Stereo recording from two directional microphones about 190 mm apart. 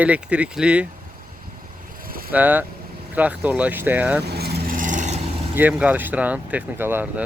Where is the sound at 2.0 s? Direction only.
50° right (ahead or behind).